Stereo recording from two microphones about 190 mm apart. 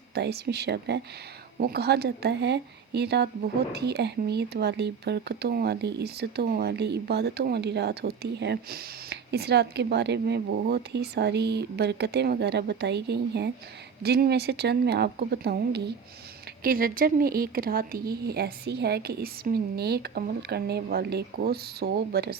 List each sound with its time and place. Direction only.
0.1 s a woman's voice: 60° right (ahead or behind)